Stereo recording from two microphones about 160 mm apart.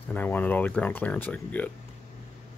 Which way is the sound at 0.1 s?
10° left (ahead or behind).